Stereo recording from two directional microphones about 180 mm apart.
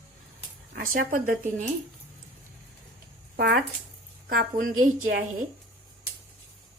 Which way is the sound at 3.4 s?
65° right (ahead or behind).